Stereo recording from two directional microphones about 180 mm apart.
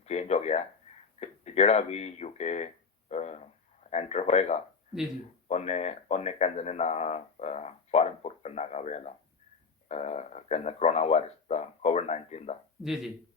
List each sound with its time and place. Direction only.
0.0 s speech: 35° left (ahead or behind)
12.8 s speech: centre (ahead or behind)